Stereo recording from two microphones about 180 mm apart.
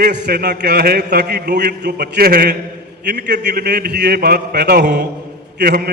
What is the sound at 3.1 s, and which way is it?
A man's voice, 70° right (ahead or behind).